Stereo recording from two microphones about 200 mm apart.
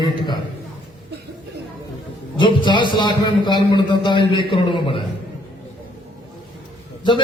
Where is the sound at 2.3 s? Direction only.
25° left (ahead or behind).